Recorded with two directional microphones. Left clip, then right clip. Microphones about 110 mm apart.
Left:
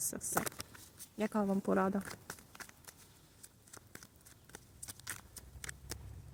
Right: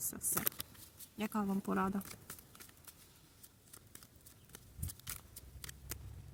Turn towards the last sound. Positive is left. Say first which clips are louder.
# left 6 dB
turn(degrees=-5)  # may be behind; listen again after turning